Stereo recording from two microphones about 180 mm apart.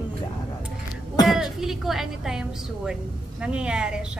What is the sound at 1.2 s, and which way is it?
Speech, centre (ahead or behind).